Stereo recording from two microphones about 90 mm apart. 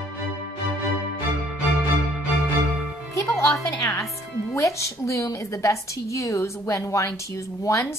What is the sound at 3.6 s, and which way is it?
A woman's voice, 35° left (ahead or behind).